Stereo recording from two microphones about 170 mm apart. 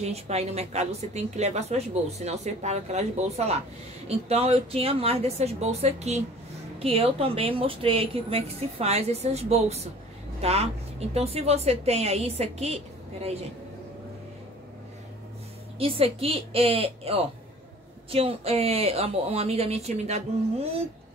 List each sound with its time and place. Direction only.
0.0 s a woman's voice: 40° right (ahead or behind)
15.8 s a woman's voice: 35° right (ahead or behind)